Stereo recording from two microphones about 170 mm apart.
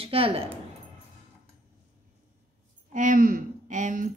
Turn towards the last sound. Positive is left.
turn(degrees=-50)  # may be behind; listen again after turning